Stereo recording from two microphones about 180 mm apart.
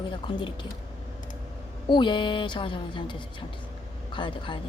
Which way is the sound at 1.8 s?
25° left (ahead or behind).